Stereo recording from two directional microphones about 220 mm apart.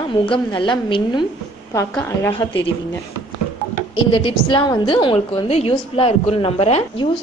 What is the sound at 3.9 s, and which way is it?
A woman's voice, 25° left (ahead or behind).